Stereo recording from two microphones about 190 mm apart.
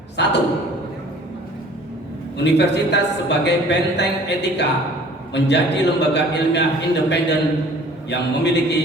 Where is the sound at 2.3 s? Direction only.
65° left (ahead or behind).